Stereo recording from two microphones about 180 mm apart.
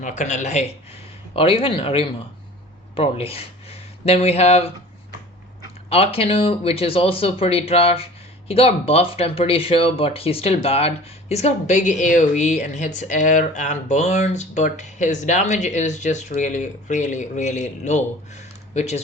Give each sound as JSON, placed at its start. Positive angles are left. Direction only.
{"t": 0.0, "sound": "speech", "side_deg": 40}
{"t": 5.9, "sound": "speech", "side_deg": 35}